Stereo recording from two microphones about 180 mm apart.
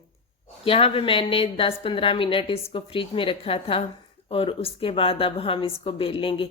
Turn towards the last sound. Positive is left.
turn(degrees=30)  # may be behind; listen again after turning